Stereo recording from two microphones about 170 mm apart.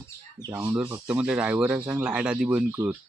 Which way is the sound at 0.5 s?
10° right (ahead or behind).